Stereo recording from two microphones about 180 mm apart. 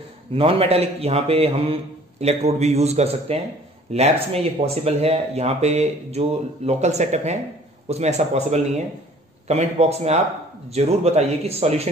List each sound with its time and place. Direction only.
0.3 s speech: 30° right (ahead or behind)